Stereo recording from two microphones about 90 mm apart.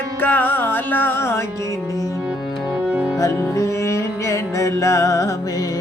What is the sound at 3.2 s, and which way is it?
Music, 35° left (ahead or behind).